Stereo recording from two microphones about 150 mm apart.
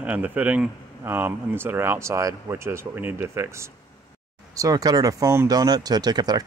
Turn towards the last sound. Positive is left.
turn(degrees=-25)  # may be behind; listen again after turning